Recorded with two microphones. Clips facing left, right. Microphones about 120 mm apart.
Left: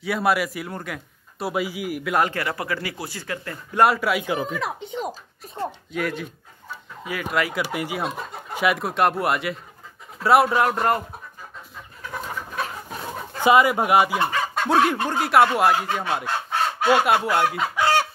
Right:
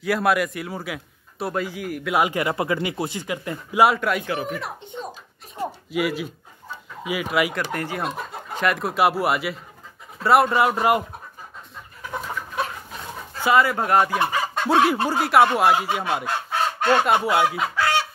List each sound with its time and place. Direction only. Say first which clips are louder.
0.0 s a man's voice: right 1 dB; centre (ahead or behind)
1.5 s speech: left 2 dB; 10° left (ahead or behind)
2.1 s speech: right 1 dB; 10° right (ahead or behind)
2.4 s speech: right 4 dB; 20° right (ahead or behind)
3.7 s speech: even; centre (ahead or behind)
4.6 s speech: left 4 dB; 90° left
5.6 s speech: right 2 dB; 10° right (ahead or behind)
7.5 s speech: left 1 dB; 10° left (ahead or behind); by 11.1 s 10° right (ahead or behind)
13.4 s speech: left 2 dB; 15° left (ahead or behind)
14.1 s chicken: even; centre (ahead or behind)
15.0 s speech: right 1 dB; centre (ahead or behind)